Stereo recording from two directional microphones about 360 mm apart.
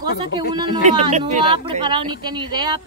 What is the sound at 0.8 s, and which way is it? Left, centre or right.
Speech, centre.